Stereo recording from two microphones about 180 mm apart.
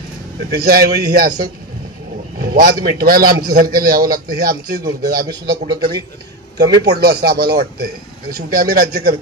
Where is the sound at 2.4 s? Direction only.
55° right (ahead or behind).